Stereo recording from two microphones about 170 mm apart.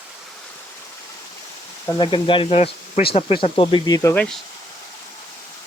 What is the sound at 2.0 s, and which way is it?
Speech, 30° left (ahead or behind).